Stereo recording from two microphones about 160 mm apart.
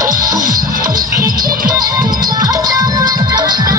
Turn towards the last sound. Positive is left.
turn(degrees=-25)  # may be behind; listen again after turning